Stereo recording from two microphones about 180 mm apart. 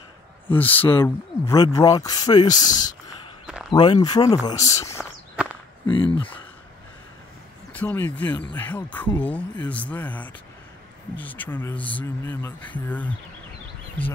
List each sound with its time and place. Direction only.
0.6 s speech: 10° left (ahead or behind)
5.3 s walk: 5° right (ahead or behind)
5.9 s speech: 25° left (ahead or behind)
7.7 s speech: 10° left (ahead or behind)